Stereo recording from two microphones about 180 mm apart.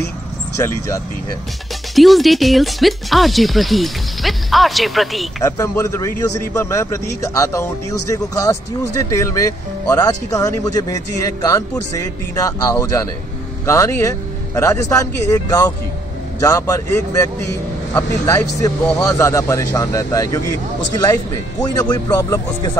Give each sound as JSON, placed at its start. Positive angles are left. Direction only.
{"t": 2.0, "sound": "speech", "side_deg": 0}
{"t": 5.4, "sound": "a man's voice", "side_deg": 15}
{"t": 9.2, "sound": "a man's voice", "side_deg": 20}